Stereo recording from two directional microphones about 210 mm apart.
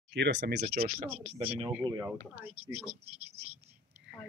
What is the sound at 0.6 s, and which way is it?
Speech, 45° right (ahead or behind).